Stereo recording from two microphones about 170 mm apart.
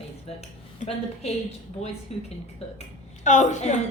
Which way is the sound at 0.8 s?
40° left (ahead or behind).